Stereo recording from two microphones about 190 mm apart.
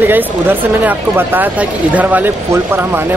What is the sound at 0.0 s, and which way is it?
Speech, 10° right (ahead or behind).